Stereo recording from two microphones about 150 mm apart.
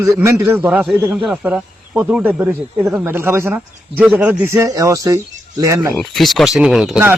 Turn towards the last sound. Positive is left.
turn(degrees=0)  # may be behind; listen again after turning